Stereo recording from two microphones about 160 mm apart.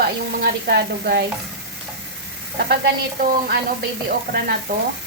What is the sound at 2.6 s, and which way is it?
Stir, 70° right (ahead or behind).